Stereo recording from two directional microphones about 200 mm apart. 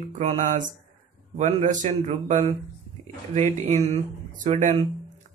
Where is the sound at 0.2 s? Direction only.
35° right (ahead or behind).